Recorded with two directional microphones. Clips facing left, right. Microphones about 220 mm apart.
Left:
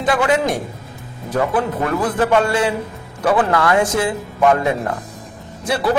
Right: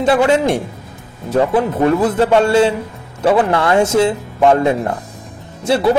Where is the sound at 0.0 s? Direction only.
30° right (ahead or behind).